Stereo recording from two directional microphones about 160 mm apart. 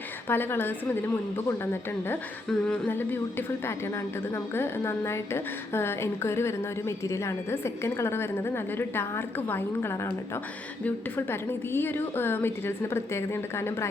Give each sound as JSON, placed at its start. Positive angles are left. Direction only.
{"t": 0.3, "sound": "a woman's voice", "side_deg": 15}